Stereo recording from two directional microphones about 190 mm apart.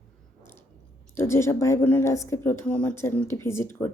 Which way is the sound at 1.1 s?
15° left (ahead or behind).